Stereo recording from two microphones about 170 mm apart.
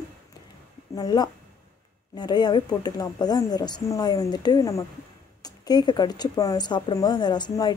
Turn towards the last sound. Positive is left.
turn(degrees=25)  # may be behind; listen again after turning